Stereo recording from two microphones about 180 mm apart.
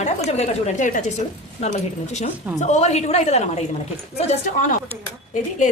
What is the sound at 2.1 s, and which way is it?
A woman's voice, 40° left (ahead or behind).